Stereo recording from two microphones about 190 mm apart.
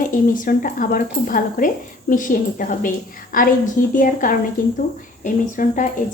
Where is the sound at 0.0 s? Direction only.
45° left (ahead or behind).